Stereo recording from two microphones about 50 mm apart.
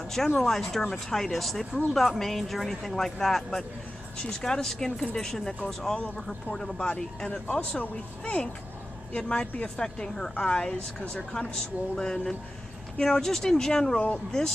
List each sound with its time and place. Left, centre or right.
0.1 s speech: centre
7.7 s speech: left; by 14.0 s centre